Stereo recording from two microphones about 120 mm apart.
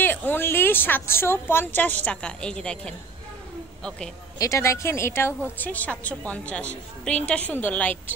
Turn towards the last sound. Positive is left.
turn(degrees=15)  # may be behind; listen again after turning